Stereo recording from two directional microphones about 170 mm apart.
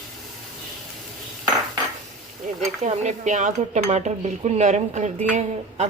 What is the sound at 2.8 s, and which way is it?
A woman's voice, 40° right (ahead or behind).